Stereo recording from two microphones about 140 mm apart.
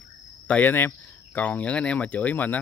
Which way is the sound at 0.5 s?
15° left (ahead or behind).